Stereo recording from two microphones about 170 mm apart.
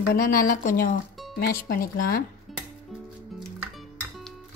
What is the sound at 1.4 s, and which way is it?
Speech, 60° left (ahead or behind).